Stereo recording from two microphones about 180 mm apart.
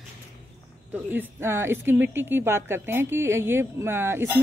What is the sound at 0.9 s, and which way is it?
Speech, 10° right (ahead or behind).